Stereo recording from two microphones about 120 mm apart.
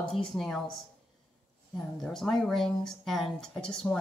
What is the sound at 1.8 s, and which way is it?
Speech, centre (ahead or behind).